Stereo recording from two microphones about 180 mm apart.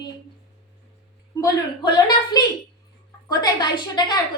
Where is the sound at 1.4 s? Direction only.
25° left (ahead or behind).